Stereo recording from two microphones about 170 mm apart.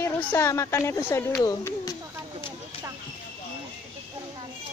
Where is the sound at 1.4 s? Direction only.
20° left (ahead or behind).